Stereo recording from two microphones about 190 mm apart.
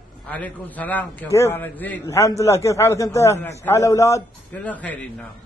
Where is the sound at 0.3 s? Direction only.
10° left (ahead or behind).